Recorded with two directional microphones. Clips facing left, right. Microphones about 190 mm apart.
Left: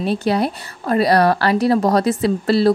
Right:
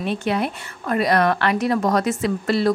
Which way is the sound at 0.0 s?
35° left (ahead or behind).